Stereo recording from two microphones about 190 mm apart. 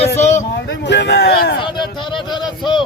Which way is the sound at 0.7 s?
65° left (ahead or behind).